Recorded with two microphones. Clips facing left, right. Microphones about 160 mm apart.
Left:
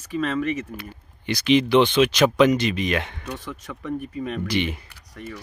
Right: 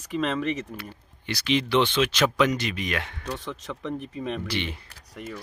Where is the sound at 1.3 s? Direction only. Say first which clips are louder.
Left 6 dB; 15° left (ahead or behind).